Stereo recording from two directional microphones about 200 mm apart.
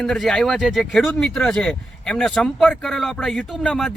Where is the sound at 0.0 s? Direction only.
Centre (ahead or behind).